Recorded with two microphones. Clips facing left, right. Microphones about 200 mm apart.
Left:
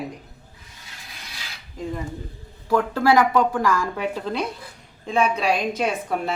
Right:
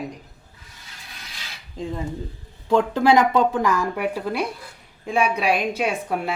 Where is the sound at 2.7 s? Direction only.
20° right (ahead or behind).